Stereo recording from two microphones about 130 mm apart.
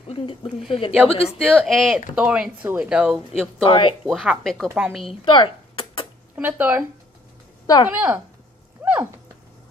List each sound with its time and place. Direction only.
0.1 s speech: 40° left (ahead or behind)
1.5 s speech: centre (ahead or behind)
2.1 s speech: 10° right (ahead or behind)
3.6 s speech: 40° left (ahead or behind)
4.0 s speech: 5° right (ahead or behind)
5.2 s a sound: 40° left (ahead or behind)
6.3 s speech: 15° right (ahead or behind)
7.6 s a woman's voice: 30° left (ahead or behind)
7.9 s speech: 10° right (ahead or behind)
8.8 s a sound: 10° right (ahead or behind)